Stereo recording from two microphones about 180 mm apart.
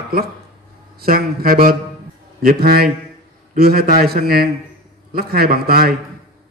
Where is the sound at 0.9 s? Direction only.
55° right (ahead or behind).